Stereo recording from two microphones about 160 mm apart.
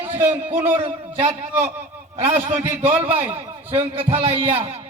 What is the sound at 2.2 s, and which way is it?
Speech, 50° right (ahead or behind).